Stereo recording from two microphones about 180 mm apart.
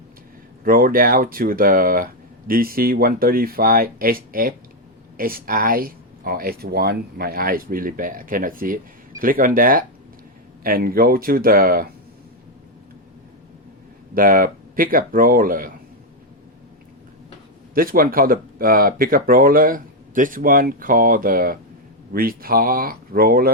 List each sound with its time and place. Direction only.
0.6 s speech: 55° right (ahead or behind)
14.1 s speech: 50° right (ahead or behind)
17.7 s speech: 55° right (ahead or behind)